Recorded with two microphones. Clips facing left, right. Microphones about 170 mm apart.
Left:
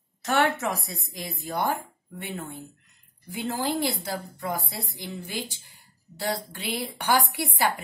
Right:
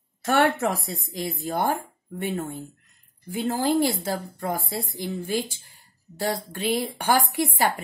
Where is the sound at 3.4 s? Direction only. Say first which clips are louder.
Right 5 dB; 45° right (ahead or behind).